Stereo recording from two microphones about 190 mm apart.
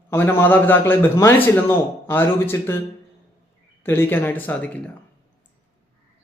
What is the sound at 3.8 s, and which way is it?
Speech, 10° left (ahead or behind).